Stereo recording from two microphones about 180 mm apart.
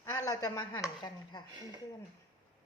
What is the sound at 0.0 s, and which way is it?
Speech, 20° left (ahead or behind).